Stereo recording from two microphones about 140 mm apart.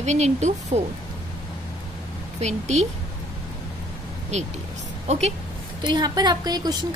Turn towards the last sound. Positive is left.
turn(degrees=-30)  # may be behind; listen again after turning